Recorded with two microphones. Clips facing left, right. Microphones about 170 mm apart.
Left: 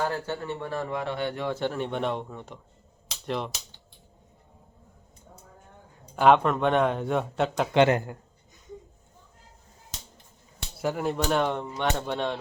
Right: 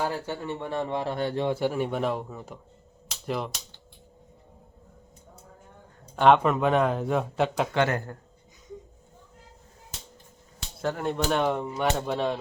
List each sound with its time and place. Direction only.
0.0 s speech: 15° right (ahead or behind); by 1.5 s 35° right (ahead or behind)
1.5 s speech: 10° right (ahead or behind)
6.1 s speech: centre (ahead or behind)
7.7 s a man's voice: 20° left (ahead or behind)
10.8 s speech: 5° left (ahead or behind)